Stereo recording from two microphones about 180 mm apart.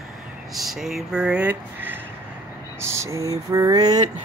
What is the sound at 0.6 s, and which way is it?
Speech, centre (ahead or behind).